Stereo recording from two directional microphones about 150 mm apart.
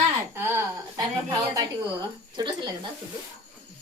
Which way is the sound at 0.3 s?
15° right (ahead or behind).